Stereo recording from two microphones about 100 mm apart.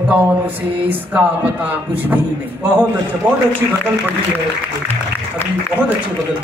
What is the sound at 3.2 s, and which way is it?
Speech, 25° right (ahead or behind).